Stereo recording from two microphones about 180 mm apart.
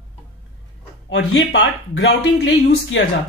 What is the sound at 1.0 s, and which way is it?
Speech, 85° left.